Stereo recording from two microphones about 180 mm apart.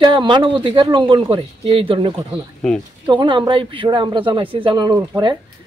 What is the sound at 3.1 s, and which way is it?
Speech, 25° right (ahead or behind).